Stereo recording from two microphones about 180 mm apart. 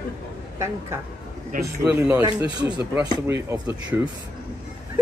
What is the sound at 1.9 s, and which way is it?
Speech, 10° right (ahead or behind).